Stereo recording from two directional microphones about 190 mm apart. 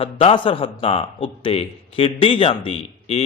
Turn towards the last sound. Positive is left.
turn(degrees=30)  # may be behind; listen again after turning